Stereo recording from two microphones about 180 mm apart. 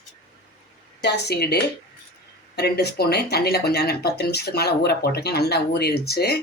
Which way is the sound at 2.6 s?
65° left (ahead or behind).